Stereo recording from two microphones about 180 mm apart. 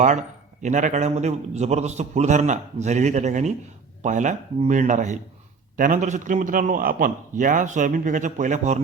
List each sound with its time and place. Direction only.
0.0 s a man's voice: 40° right (ahead or behind)